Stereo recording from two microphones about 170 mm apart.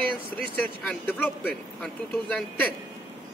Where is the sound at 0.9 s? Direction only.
10° left (ahead or behind).